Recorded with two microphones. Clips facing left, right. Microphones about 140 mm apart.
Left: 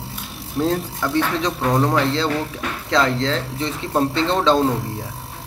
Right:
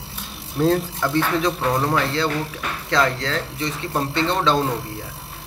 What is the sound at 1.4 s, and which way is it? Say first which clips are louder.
Speech: left 1 dB; 15° left (ahead or behind).